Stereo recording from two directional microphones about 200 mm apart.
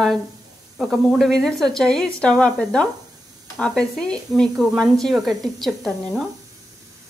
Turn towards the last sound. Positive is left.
turn(degrees=0)  # may be behind; listen again after turning